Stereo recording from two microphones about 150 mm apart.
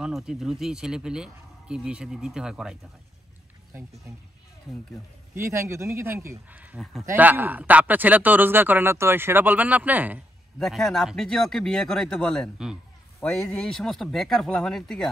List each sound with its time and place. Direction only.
0.0 s speech: 5° right (ahead or behind)
5.3 s speech: 20° right (ahead or behind)
6.8 s speech: centre (ahead or behind)
7.1 s speech: 10° right (ahead or behind)
10.6 s speech: centre (ahead or behind)